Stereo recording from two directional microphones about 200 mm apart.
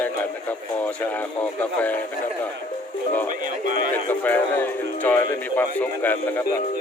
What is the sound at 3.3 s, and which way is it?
Speech, 40° right (ahead or behind).